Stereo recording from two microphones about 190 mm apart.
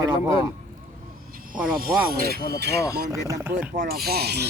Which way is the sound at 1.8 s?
50° right (ahead or behind).